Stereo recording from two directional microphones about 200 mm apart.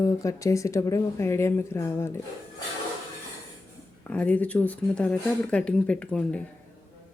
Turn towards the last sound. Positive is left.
turn(degrees=5)  # may be behind; listen again after turning